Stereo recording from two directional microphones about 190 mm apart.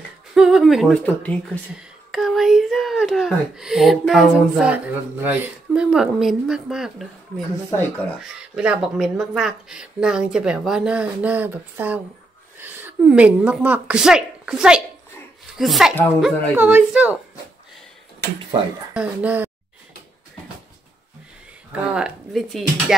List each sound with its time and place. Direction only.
0.3 s a child's voice: 5° right (ahead or behind)
18.9 s a woman's voice: 10° right (ahead or behind)
21.9 s speech: centre (ahead or behind)